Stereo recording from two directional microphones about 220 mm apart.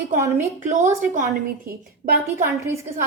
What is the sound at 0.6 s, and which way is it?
Speech, 30° right (ahead or behind).